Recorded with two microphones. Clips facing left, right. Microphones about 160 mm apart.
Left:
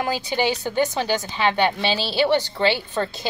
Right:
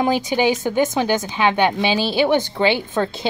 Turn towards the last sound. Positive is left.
turn(degrees=-20)  # may be behind; listen again after turning